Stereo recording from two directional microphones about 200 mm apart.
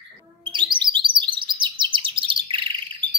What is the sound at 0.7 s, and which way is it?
Chirp, 25° right (ahead or behind).